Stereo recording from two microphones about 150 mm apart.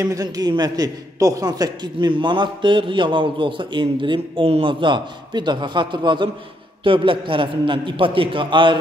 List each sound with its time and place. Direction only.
0.0 s a man's voice: 25° right (ahead or behind)